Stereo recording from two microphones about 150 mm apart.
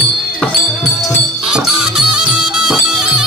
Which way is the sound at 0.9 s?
Centre (ahead or behind).